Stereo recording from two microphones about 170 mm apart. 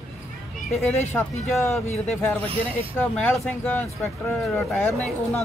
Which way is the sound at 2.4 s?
35° right (ahead or behind).